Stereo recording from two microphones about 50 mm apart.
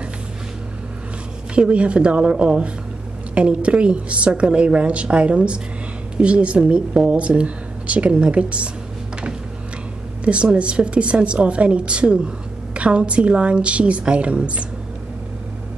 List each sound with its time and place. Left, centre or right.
1.5 s a woman's voice: right
10.2 s a woman's voice: right